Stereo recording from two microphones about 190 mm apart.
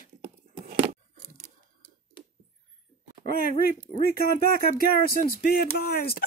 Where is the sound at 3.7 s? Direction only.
50° left (ahead or behind).